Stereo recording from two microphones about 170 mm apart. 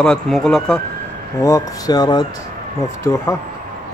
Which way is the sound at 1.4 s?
20° left (ahead or behind).